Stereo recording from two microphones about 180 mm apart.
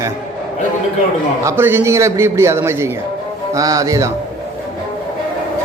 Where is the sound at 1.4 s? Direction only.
10° right (ahead or behind).